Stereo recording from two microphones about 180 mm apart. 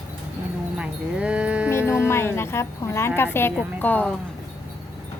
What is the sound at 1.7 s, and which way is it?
Music, 15° left (ahead or behind).